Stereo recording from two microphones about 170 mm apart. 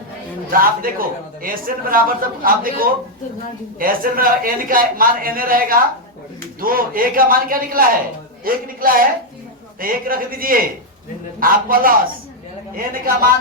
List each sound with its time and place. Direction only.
0.5 s a man's voice: 55° right (ahead or behind)